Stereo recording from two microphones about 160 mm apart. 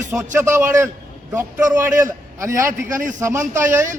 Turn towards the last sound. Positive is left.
turn(degrees=-15)  # may be behind; listen again after turning